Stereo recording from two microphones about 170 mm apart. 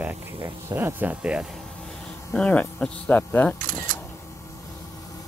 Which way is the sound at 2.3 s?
5° left (ahead or behind).